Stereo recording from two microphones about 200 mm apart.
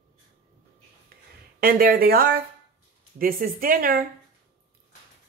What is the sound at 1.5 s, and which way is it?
A woman's voice, 45° right (ahead or behind).